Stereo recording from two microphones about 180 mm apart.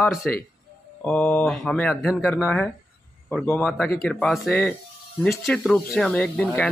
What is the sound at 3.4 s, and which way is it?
Speech, 10° left (ahead or behind).